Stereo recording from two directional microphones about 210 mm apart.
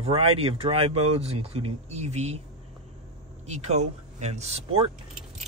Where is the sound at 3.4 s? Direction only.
30° right (ahead or behind).